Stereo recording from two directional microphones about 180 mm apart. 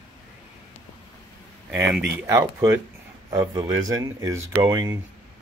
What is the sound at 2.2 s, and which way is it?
A man's voice, 15° right (ahead or behind).